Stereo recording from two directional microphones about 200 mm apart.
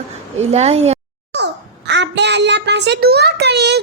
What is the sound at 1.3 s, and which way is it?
Babbling, 60° right (ahead or behind).